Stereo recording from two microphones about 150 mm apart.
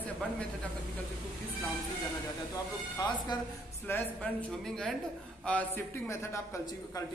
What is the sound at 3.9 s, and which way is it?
A man's voice, 10° left (ahead or behind).